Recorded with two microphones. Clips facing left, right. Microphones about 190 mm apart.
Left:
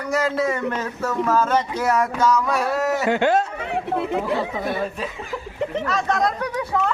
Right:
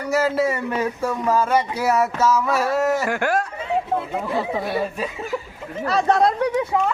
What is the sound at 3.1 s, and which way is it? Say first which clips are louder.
Speech: left 3 dB; 20° left (ahead or behind).